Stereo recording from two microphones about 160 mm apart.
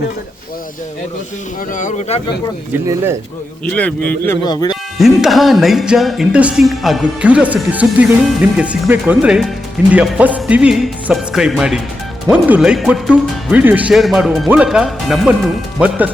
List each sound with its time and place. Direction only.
1.7 s speech: 50° left (ahead or behind)
2.8 s speech: 15° right (ahead or behind)
3.7 s speech: 10° left (ahead or behind)
4.4 s speech: 25° left (ahead or behind)
4.9 s speech: centre (ahead or behind)